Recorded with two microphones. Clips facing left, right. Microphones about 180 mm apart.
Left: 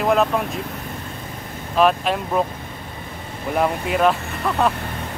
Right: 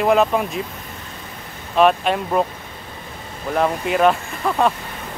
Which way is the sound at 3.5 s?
5° left (ahead or behind).